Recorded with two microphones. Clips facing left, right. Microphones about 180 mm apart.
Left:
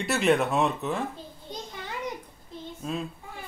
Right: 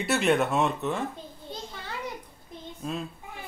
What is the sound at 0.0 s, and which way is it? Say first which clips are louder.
A man's voice: even; centre (ahead or behind).